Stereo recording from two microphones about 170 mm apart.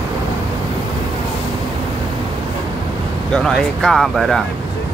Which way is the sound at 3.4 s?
5° left (ahead or behind).